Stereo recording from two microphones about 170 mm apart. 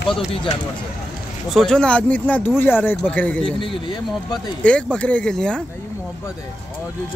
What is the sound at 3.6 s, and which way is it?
Speech, 30° left (ahead or behind).